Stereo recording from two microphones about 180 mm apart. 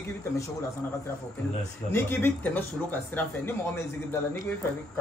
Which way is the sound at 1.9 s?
10° left (ahead or behind).